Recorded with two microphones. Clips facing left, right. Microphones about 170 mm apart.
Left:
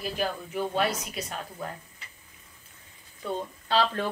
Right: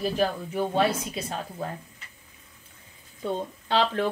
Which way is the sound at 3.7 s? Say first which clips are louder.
Right 2 dB; 20° right (ahead or behind).